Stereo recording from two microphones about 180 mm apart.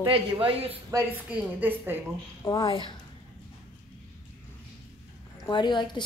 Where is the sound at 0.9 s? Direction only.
15° right (ahead or behind).